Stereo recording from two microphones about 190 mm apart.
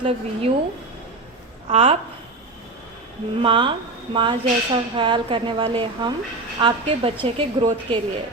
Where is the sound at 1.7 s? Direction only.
30° right (ahead or behind).